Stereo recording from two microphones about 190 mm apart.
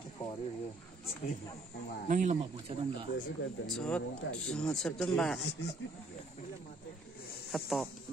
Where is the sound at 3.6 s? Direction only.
5° left (ahead or behind).